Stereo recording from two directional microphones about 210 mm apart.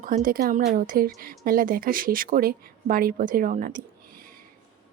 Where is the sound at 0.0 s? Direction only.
40° right (ahead or behind).